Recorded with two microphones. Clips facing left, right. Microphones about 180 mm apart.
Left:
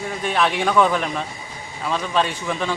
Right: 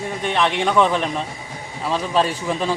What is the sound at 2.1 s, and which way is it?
Speech, 35° right (ahead or behind).